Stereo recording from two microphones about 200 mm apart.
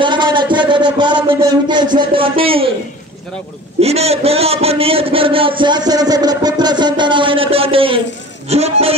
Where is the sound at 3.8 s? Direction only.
30° right (ahead or behind).